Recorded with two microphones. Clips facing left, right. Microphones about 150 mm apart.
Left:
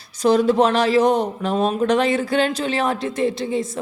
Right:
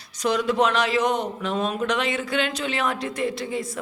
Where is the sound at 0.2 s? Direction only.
30° left (ahead or behind).